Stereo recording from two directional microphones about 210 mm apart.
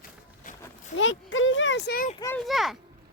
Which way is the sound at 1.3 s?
65° left (ahead or behind).